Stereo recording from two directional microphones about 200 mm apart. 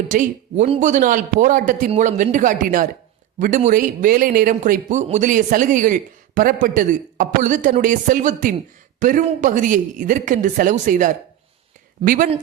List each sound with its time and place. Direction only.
0.1 s a man's voice: 40° right (ahead or behind)